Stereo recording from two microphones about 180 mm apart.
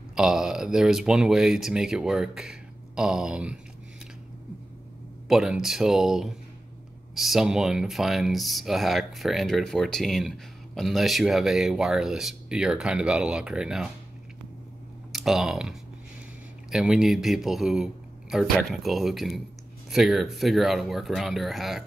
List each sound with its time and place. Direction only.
0.1 s speech: 5° right (ahead or behind)
5.3 s speech: 5° right (ahead or behind)
15.1 s speech: centre (ahead or behind)